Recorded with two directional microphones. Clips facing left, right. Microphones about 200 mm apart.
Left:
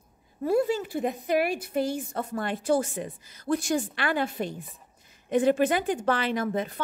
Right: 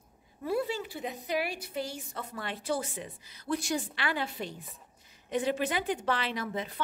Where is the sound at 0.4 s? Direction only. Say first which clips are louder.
Left 7 dB; 45° left (ahead or behind).